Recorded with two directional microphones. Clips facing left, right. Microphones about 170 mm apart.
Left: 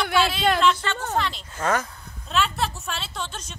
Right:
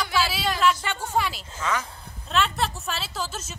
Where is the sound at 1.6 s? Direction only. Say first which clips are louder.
Left 4 dB; 50° left (ahead or behind).